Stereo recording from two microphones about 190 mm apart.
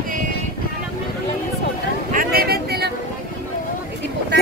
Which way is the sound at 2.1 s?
50° right (ahead or behind).